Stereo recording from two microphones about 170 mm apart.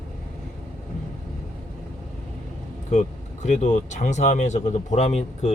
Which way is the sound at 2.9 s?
45° left (ahead or behind).